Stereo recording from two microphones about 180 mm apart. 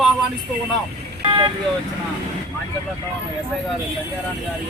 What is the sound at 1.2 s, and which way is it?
Speech, 25° right (ahead or behind).